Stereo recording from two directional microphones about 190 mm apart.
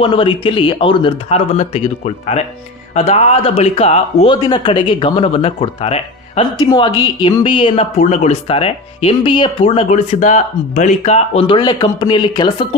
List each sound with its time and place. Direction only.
0.0 s speech: 30° left (ahead or behind)